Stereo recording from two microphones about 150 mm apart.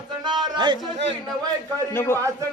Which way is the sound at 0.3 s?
30° right (ahead or behind).